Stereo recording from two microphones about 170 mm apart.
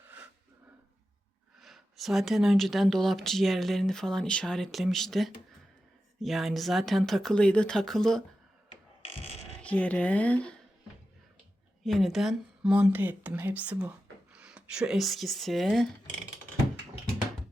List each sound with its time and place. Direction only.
1.5 s speech: centre (ahead or behind)
9.0 s a sound: 35° left (ahead or behind)
9.6 s speech: 10° left (ahead or behind)
11.8 s speech: centre (ahead or behind)